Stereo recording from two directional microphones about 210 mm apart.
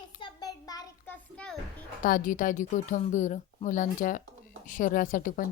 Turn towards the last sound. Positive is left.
turn(degrees=40)  # may be behind; listen again after turning